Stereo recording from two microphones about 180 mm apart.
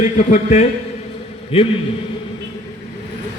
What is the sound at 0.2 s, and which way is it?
A man's voice, 45° left (ahead or behind).